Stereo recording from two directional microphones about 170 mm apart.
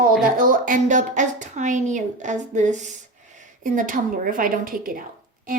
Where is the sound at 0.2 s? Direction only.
55° right (ahead or behind).